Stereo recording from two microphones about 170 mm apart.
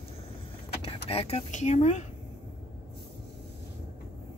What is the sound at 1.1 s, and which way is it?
Speech, 35° left (ahead or behind).